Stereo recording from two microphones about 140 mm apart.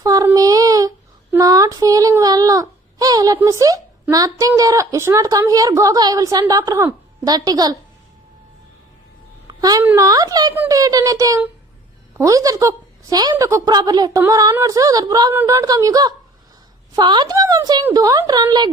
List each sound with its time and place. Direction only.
0.0 s child singing: 25° right (ahead or behind)
4.1 s a woman's voice: 25° right (ahead or behind)
9.5 s a sound: 25° right (ahead or behind)
9.8 s a woman's voice: 20° right (ahead or behind)